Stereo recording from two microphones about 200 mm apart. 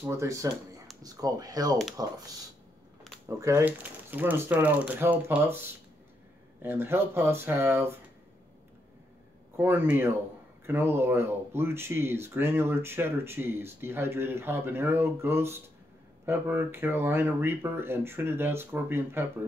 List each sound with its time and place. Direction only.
0.0 s speech: 15° right (ahead or behind)
3.3 s speech: 15° right (ahead or behind)
9.6 s speech: 10° right (ahead or behind)